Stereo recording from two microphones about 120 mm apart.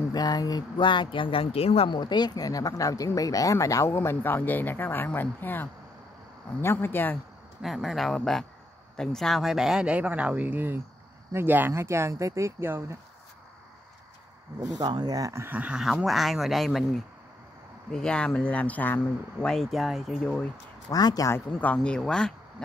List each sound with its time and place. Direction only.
0.1 s speech: 35° left (ahead or behind); by 7.2 s 15° left (ahead or behind)
7.6 s speech: centre (ahead or behind); by 12.9 s 20° right (ahead or behind)
14.8 s speech: 35° right (ahead or behind); by 20.4 s centre (ahead or behind)
20.9 s speech: 30° left (ahead or behind)
21.3 s speech: 15° left (ahead or behind)